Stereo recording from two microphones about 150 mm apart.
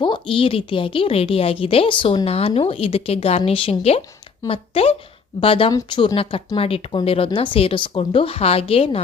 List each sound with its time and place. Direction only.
0.0 s a woman's voice: 35° left (ahead or behind)